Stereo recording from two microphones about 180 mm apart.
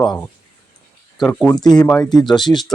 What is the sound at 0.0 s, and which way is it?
Speech, 5° left (ahead or behind).